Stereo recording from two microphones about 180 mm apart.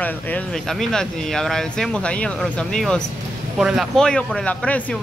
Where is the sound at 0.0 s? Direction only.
5° left (ahead or behind).